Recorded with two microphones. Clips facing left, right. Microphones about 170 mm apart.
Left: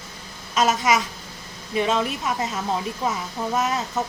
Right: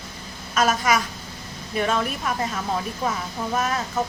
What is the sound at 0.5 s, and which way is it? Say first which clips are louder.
Speech: left 1 dB; 20° left (ahead or behind).